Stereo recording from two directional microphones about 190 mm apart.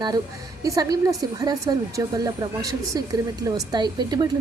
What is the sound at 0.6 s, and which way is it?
Speech, 20° right (ahead or behind).